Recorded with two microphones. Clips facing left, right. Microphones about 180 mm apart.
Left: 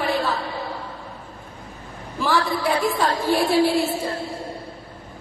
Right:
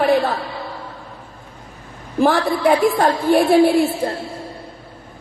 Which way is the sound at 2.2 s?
55° right (ahead or behind).